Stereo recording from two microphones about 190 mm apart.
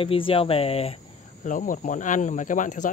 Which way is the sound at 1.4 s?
45° left (ahead or behind).